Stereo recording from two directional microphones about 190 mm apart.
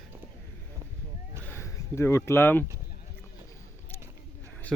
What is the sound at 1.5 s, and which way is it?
Speech, 15° left (ahead or behind).